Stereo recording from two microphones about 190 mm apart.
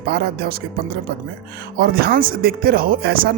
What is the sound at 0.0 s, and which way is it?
Speech, 55° right (ahead or behind).